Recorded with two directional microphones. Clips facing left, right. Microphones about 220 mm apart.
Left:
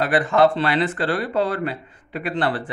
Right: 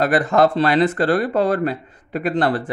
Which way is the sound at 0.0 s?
40° right (ahead or behind).